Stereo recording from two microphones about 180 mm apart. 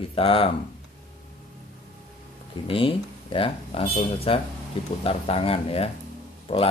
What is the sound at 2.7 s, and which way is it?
Speech, 30° left (ahead or behind).